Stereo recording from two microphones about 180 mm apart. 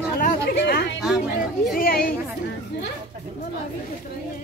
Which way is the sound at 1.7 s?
55° left (ahead or behind).